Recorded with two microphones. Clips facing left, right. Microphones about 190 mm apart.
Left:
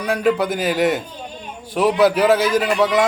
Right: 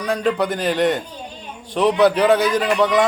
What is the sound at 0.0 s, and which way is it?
Speech, 5° left (ahead or behind).